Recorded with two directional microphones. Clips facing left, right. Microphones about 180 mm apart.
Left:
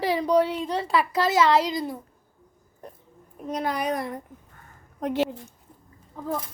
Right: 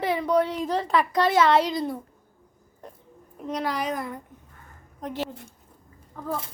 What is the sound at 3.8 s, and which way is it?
Speech, 35° left (ahead or behind).